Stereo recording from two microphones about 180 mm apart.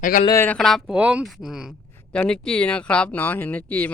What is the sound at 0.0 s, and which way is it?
Speech, 45° left (ahead or behind).